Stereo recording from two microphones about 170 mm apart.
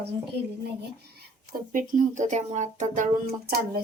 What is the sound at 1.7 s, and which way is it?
A child's voice, 50° right (ahead or behind).